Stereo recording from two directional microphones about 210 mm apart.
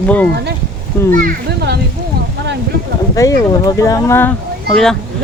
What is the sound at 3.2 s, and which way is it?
Speech, 15° left (ahead or behind).